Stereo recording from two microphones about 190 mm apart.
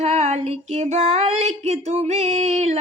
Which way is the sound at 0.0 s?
35° right (ahead or behind).